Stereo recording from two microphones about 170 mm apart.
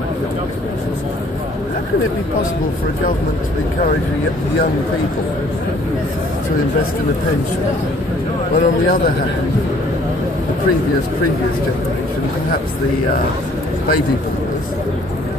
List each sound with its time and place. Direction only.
8.5 s speech: 55° left (ahead or behind)